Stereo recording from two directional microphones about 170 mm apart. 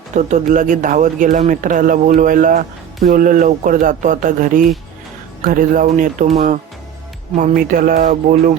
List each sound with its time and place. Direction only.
0.1 s a man's voice: 45° right (ahead or behind)
7.3 s a man's voice: 50° right (ahead or behind)